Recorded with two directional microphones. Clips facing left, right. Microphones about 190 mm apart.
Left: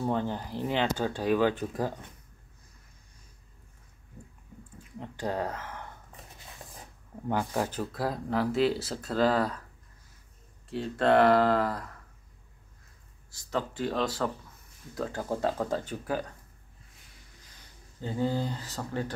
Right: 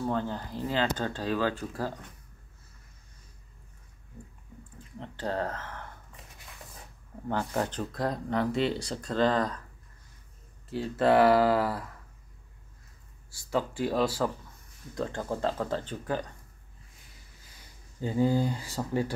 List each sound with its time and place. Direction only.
0.0 s speech: 15° left (ahead or behind)
5.0 s speech: 10° left (ahead or behind)
7.2 s speech: 10° left (ahead or behind)
10.7 s speech: 5° right (ahead or behind)
13.3 s speech: 10° right (ahead or behind)
15.0 s speech: 5° left (ahead or behind)
18.0 s speech: 10° right (ahead or behind)